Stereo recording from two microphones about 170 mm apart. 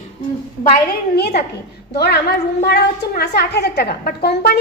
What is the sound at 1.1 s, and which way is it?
A woman's voice, 70° left (ahead or behind).